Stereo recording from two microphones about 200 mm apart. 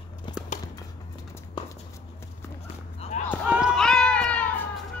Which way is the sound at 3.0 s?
30° left (ahead or behind).